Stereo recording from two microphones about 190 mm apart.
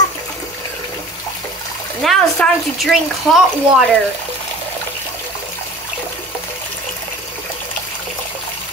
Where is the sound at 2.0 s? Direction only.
Centre (ahead or behind).